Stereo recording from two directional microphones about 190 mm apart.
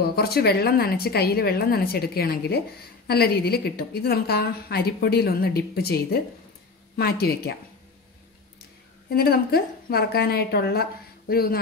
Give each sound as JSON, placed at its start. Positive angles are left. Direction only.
{"t": 0.1, "sound": "a woman's voice", "side_deg": 55}
{"t": 9.1, "sound": "a woman's voice", "side_deg": 55}